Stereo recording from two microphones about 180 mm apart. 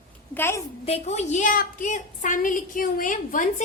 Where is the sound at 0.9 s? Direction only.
35° left (ahead or behind).